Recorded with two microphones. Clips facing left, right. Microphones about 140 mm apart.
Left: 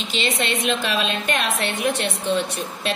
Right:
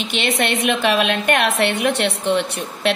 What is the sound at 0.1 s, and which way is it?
A woman's voice, 60° right (ahead or behind).